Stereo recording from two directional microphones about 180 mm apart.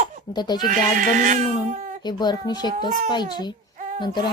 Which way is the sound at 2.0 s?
25° left (ahead or behind).